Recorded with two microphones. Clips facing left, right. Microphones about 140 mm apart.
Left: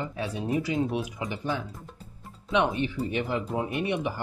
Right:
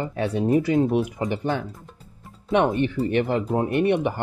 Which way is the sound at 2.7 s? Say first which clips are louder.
Right 7 dB; 60° right (ahead or behind).